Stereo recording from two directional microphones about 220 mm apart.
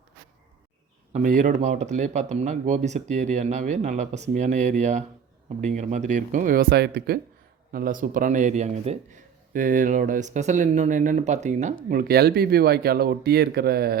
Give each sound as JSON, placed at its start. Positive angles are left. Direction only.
{"t": 1.1, "sound": "speech", "side_deg": -35}